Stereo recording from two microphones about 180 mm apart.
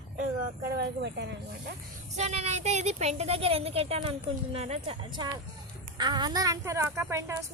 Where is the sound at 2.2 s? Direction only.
35° right (ahead or behind); by 7.5 s 15° right (ahead or behind).